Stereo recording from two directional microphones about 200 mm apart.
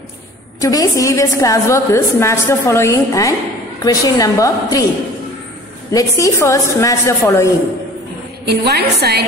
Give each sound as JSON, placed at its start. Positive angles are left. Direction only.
{"t": 0.6, "sound": "a woman's voice", "side_deg": 15}
{"t": 5.9, "sound": "a woman's voice", "side_deg": 15}
{"t": 8.5, "sound": "a woman's voice", "side_deg": -55}